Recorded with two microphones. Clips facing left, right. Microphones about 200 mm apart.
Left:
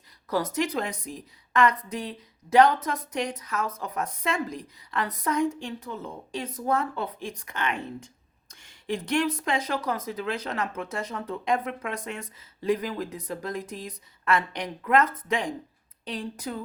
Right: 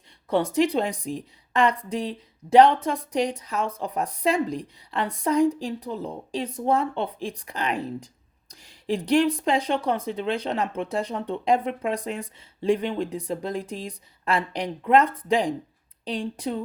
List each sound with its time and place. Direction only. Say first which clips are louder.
0.3 s speech: right 5 dB; 30° right (ahead or behind)